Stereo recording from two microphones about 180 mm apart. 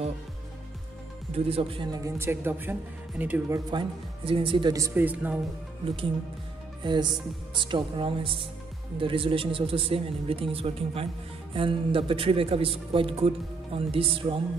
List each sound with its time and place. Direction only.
1.3 s speech: 35° right (ahead or behind); by 3.8 s 15° right (ahead or behind)
4.2 s speech: 30° right (ahead or behind); by 5.4 s 10° right (ahead or behind)
6.8 s music: 25° right (ahead or behind)
7.5 s speech: 25° right (ahead or behind)